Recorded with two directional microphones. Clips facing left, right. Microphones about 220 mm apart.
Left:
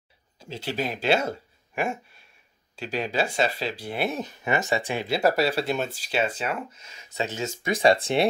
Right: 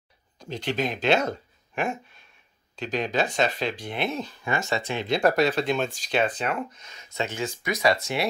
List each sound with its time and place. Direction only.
0.4 s speech: 5° left (ahead or behind)
7.0 s speech: 35° left (ahead or behind)